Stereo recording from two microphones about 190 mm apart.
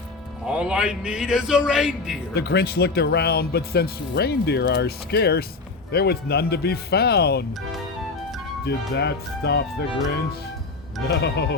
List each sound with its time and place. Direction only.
0.4 s a man's voice: 5° right (ahead or behind)
2.3 s speech: 60° left (ahead or behind)
9.0 s speech: 60° left (ahead or behind)
11.1 s speech: 60° left (ahead or behind)